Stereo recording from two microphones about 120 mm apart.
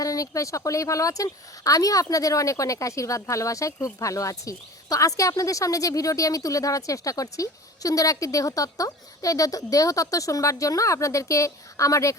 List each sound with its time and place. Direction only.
0.0 s a woman's voice: 30° left (ahead or behind)